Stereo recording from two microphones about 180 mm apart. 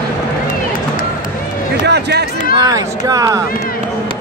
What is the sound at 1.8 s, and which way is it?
Speech, 65° right (ahead or behind).